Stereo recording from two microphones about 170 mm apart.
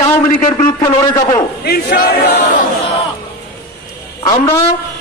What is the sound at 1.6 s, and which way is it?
Speech, 65° left (ahead or behind).